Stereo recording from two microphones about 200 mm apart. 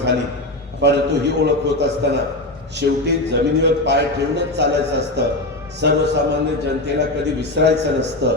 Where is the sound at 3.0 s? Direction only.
60° right (ahead or behind).